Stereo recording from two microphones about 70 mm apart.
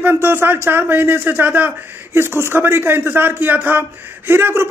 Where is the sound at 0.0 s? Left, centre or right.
Right.